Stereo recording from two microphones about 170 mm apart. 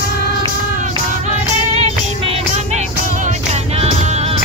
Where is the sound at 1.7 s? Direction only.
35° right (ahead or behind).